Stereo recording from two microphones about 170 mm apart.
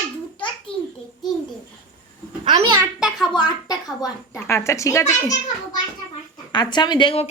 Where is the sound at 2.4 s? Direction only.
25° right (ahead or behind).